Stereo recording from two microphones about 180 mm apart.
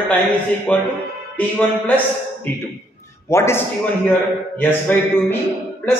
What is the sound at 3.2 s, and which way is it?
A man's voice, 15° left (ahead or behind).